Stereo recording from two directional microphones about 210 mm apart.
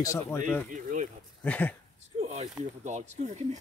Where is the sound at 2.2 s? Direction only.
30° right (ahead or behind).